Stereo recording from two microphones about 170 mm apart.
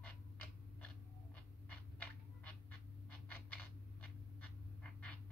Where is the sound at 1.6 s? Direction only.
10° left (ahead or behind).